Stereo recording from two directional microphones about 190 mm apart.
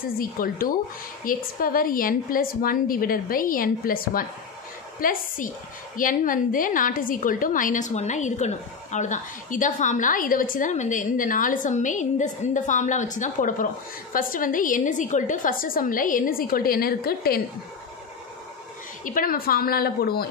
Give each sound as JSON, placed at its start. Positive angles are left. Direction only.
{"t": 0.0, "sound": "a woman's voice", "side_deg": 50}
{"t": 19.0, "sound": "a woman's voice", "side_deg": 50}